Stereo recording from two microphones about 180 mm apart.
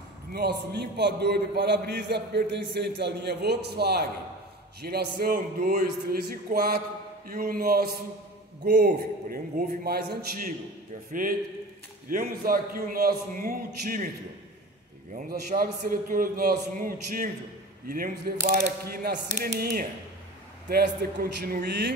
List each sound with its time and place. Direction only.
0.3 s a man's voice: 65° right (ahead or behind)
12.1 s a man's voice: 50° right (ahead or behind)
15.1 s a man's voice: 55° right (ahead or behind)